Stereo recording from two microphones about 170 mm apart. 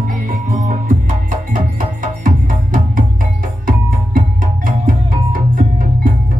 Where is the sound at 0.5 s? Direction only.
50° right (ahead or behind).